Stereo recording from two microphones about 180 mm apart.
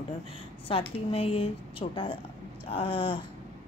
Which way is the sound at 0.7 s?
30° left (ahead or behind).